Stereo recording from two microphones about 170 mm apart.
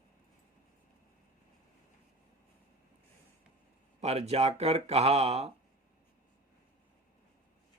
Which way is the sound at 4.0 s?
40° right (ahead or behind).